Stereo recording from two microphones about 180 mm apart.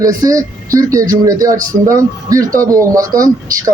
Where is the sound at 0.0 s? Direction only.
20° right (ahead or behind).